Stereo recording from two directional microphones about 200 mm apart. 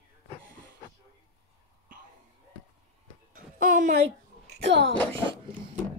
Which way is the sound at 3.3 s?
40° right (ahead or behind).